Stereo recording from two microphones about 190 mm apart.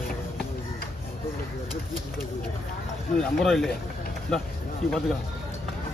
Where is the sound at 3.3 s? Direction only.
Centre (ahead or behind).